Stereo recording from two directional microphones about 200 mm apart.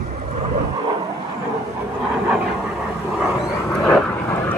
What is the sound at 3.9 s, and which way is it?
Vehicle, 5° left (ahead or behind).